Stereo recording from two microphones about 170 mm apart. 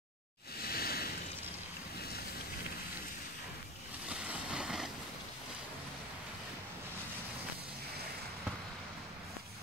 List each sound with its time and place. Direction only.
0.6 s a sound: 65° left (ahead or behind)
2.0 s boat: 65° left (ahead or behind)
4.1 s boat: 5° right (ahead or behind)